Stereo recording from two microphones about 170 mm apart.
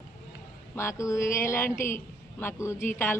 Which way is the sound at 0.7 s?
15° left (ahead or behind).